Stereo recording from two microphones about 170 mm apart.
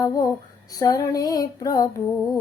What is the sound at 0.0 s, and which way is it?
Music, 20° left (ahead or behind).